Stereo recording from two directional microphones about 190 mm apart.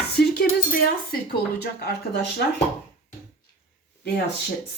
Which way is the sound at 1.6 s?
60° left (ahead or behind).